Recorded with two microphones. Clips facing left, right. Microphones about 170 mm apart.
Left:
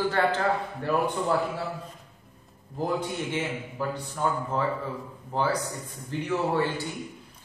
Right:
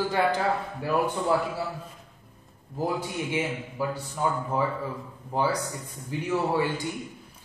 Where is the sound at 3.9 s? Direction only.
10° right (ahead or behind).